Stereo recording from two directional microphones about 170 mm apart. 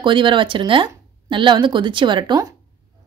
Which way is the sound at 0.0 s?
30° right (ahead or behind).